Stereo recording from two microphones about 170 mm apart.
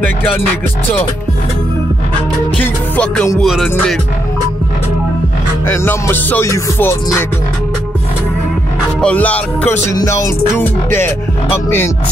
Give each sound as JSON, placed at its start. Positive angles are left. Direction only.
{"t": 2.6, "sound": "music", "side_deg": 5}
{"t": 5.7, "sound": "music", "side_deg": 15}
{"t": 9.0, "sound": "music", "side_deg": 10}